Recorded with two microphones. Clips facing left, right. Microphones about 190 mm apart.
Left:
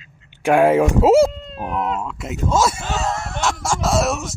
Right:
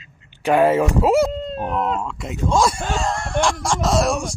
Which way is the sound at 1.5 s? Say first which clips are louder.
Right 2 dB; 5° left (ahead or behind).